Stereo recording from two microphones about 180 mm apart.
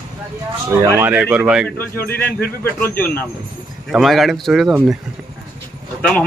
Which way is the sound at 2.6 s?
10° left (ahead or behind).